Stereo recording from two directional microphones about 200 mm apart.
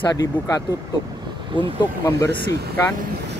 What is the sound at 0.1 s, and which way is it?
Speech, 20° left (ahead or behind).